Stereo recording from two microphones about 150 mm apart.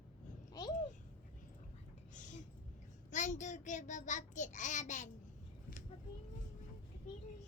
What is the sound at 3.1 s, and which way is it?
A child's voice, 55° left (ahead or behind).